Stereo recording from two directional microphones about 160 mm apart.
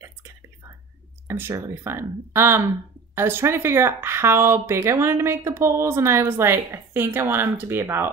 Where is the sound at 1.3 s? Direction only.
15° right (ahead or behind).